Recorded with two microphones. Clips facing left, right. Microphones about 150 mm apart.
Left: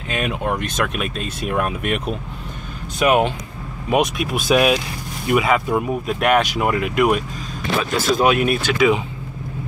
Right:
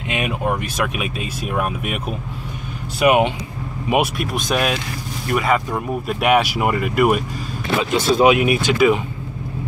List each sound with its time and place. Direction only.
0.3 s speech: 5° right (ahead or behind)
6.1 s speech: 10° right (ahead or behind)
7.8 s speech: 20° right (ahead or behind)
8.4 s speech: 5° right (ahead or behind)